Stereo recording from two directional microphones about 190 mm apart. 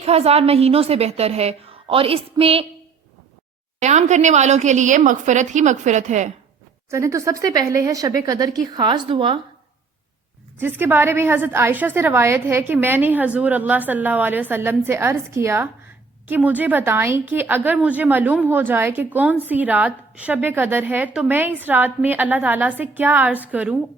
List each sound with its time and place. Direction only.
0.0 s a woman's voice: 35° right (ahead or behind)
3.8 s a woman's voice: 40° right (ahead or behind)
6.9 s speech: 15° right (ahead or behind)
10.6 s a woman's voice: 10° right (ahead or behind)